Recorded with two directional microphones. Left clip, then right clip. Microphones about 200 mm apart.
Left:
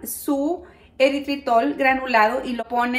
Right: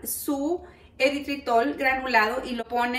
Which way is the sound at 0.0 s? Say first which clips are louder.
Left 5 dB; 30° left (ahead or behind).